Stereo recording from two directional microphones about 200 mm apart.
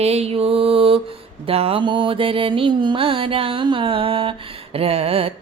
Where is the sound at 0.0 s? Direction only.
30° right (ahead or behind).